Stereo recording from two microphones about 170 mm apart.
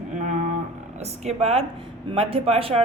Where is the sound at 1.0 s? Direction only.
40° right (ahead or behind).